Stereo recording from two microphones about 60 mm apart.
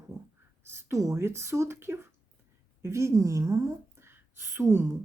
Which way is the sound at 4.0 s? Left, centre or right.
Right.